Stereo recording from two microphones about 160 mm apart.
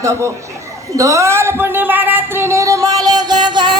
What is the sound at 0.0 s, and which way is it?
Speech, 20° right (ahead or behind).